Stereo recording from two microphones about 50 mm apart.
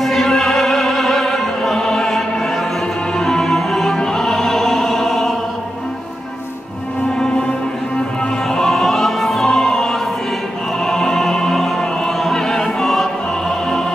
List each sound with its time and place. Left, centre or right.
0.0 s music: centre
8.5 s opera: centre